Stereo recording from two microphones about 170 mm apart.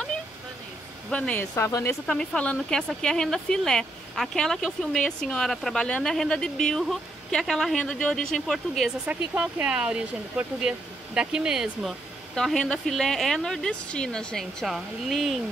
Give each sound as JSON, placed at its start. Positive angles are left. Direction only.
{"t": 1.1, "sound": "speech", "side_deg": 5}
{"t": 1.5, "sound": "speech", "side_deg": 20}
{"t": 2.0, "sound": "speech", "side_deg": 5}